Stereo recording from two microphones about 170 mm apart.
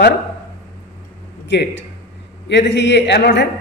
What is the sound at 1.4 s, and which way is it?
A man's voice, 90° left.